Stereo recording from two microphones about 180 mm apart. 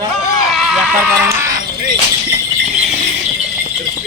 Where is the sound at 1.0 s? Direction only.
15° right (ahead or behind).